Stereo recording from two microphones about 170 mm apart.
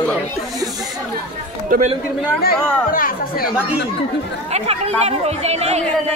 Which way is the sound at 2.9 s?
55° left (ahead or behind).